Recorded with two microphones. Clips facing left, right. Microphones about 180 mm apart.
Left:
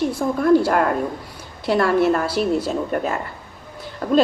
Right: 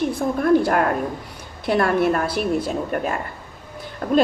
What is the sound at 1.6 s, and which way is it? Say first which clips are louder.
A woman's voice: left 1 dB; 55° right (ahead or behind).